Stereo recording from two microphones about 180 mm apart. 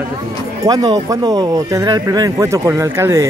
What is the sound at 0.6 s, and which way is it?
Speech, 20° right (ahead or behind).